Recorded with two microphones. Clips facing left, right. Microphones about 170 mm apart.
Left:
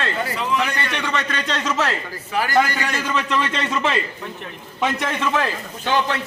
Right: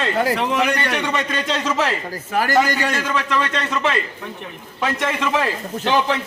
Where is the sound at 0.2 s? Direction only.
65° right (ahead or behind).